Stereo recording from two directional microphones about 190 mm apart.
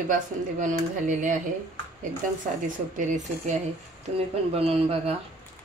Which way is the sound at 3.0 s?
40° right (ahead or behind).